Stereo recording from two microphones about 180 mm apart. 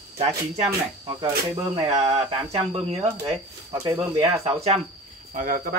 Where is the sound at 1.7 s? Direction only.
30° right (ahead or behind).